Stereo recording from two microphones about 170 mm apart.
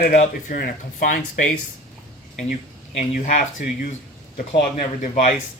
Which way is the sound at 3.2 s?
45° left (ahead or behind).